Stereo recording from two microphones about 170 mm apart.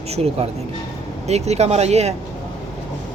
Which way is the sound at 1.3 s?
40° right (ahead or behind).